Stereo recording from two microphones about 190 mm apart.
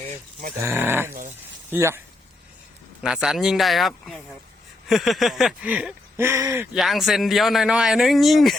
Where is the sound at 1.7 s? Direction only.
10° right (ahead or behind).